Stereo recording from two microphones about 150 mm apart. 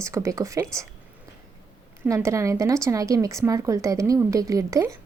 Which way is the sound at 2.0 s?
20° right (ahead or behind).